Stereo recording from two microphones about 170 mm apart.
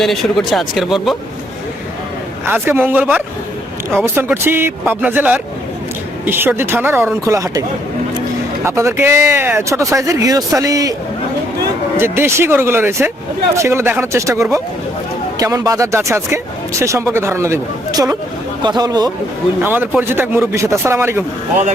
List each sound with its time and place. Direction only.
0.0 s speech: centre (ahead or behind)
2.5 s speech: 10° right (ahead or behind)
8.6 s speech: 15° right (ahead or behind)
11.9 s speech: 15° right (ahead or behind)
19.6 s speech: 10° right (ahead or behind)